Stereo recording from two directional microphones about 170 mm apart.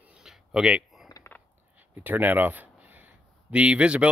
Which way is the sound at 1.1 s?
15° left (ahead or behind).